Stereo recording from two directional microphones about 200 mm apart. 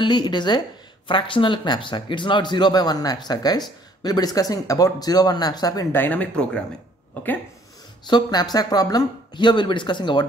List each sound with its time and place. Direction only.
0.0 s speech: 20° left (ahead or behind)
8.1 s speech: 20° left (ahead or behind)